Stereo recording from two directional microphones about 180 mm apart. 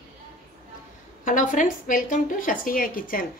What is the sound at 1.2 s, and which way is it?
A woman's voice, 45° left (ahead or behind).